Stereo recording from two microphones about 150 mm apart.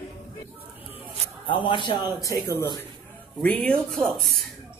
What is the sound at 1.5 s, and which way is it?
Speech, 30° left (ahead or behind).